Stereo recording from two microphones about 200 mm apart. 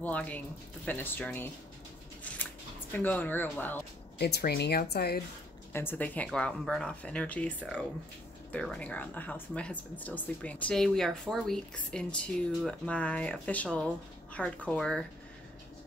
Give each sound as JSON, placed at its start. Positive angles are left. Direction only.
{"t": 0.0, "sound": "speech", "side_deg": 5}
{"t": 2.9, "sound": "speech", "side_deg": 10}
{"t": 4.2, "sound": "speech", "side_deg": 50}
{"t": 5.7, "sound": "speech", "side_deg": 10}